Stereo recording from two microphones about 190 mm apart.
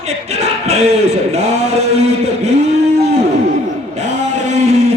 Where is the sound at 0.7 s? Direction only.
35° right (ahead or behind).